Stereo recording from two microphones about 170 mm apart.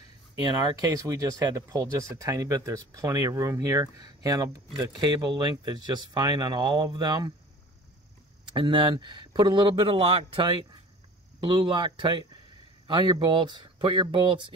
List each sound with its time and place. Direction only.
0.7 s speech: 20° right (ahead or behind)
8.5 s speech: 30° right (ahead or behind)